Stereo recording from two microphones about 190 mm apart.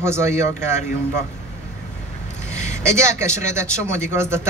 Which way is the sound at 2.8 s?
15° right (ahead or behind).